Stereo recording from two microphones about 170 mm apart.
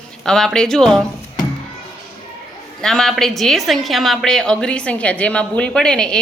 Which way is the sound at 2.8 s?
5° left (ahead or behind).